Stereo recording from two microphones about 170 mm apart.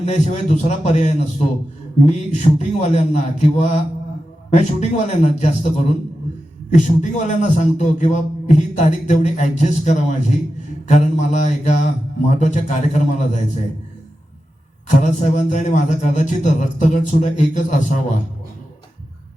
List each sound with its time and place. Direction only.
0.0 s a man's voice: 40° left (ahead or behind)
14.8 s a man's voice: 45° left (ahead or behind)